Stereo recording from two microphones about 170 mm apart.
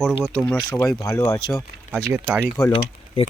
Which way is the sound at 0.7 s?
15° left (ahead or behind).